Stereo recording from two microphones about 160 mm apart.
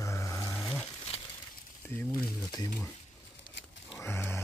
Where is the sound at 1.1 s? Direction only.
40° left (ahead or behind).